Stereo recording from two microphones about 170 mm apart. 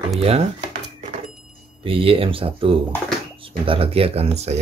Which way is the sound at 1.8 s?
30° right (ahead or behind).